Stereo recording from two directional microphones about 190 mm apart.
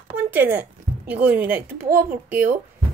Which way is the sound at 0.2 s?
10° right (ahead or behind).